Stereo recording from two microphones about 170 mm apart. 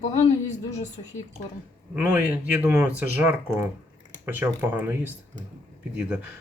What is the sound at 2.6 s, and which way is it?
Speech, 10° right (ahead or behind).